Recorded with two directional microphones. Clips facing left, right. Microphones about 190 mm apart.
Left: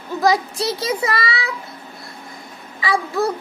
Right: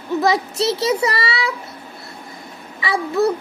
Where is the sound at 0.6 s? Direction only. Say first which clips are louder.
Right 4 dB; 65° right (ahead or behind).